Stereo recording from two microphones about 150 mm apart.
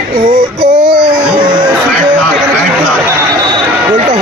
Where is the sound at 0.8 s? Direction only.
30° right (ahead or behind).